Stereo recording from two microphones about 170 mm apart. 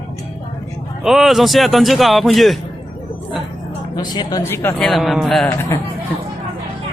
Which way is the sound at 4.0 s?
25° left (ahead or behind).